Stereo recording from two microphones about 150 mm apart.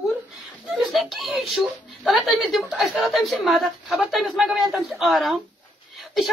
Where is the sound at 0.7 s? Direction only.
Centre (ahead or behind).